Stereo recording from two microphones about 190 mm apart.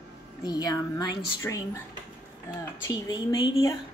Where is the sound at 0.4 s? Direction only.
20° left (ahead or behind).